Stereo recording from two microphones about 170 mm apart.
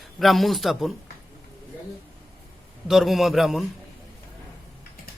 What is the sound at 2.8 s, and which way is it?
Speech, centre (ahead or behind).